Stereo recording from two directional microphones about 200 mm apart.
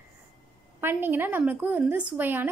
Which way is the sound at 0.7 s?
10° right (ahead or behind).